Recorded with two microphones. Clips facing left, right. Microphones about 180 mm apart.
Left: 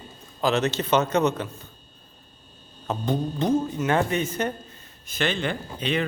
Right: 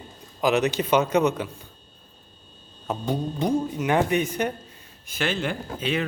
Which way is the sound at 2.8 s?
10° right (ahead or behind).